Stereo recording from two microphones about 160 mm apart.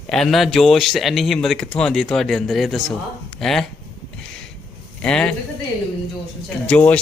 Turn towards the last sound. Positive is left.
turn(degrees=10)  # may be behind; listen again after turning